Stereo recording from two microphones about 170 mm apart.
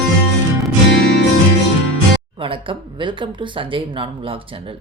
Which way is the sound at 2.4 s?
30° right (ahead or behind).